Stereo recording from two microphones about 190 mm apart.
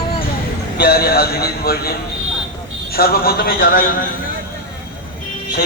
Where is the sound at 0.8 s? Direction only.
55° left (ahead or behind).